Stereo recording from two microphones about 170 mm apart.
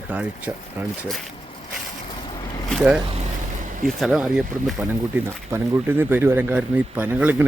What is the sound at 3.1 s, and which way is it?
Vehicle, 45° right (ahead or behind).